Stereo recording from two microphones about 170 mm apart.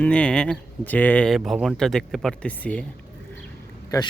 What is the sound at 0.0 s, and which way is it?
Speech, 5° left (ahead or behind).